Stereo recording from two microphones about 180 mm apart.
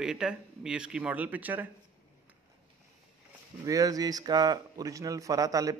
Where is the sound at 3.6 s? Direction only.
20° right (ahead or behind).